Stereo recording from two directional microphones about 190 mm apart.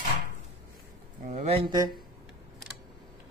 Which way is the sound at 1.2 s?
35° right (ahead or behind).